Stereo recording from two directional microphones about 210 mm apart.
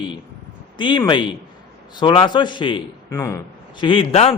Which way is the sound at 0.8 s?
20° left (ahead or behind).